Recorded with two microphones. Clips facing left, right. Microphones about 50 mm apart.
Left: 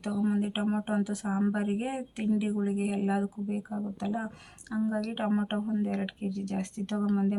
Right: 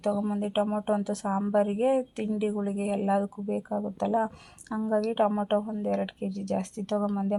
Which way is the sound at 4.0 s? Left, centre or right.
Centre.